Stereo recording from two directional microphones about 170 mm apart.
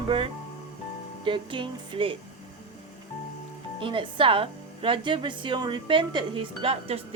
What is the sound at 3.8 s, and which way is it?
A woman's voice, 30° right (ahead or behind).